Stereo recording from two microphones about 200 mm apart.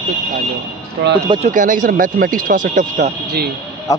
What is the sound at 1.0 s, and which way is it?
Speech, 65° right (ahead or behind).